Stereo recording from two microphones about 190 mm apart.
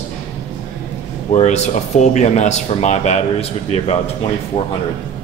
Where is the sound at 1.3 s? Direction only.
35° left (ahead or behind).